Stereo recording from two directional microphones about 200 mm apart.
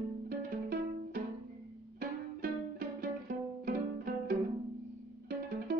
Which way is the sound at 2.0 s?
50° right (ahead or behind).